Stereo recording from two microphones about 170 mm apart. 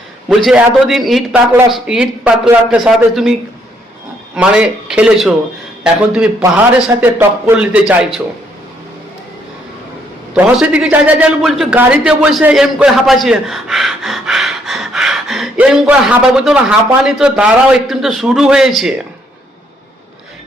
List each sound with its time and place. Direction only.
0.3 s a man's voice: 5° right (ahead or behind)
4.4 s a man's voice: 5° right (ahead or behind)
10.3 s a man's voice: 10° right (ahead or behind)